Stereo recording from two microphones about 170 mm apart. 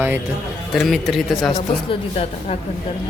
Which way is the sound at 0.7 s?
Centre (ahead or behind).